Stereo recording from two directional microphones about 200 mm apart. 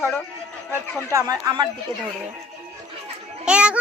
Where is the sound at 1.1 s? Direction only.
15° right (ahead or behind).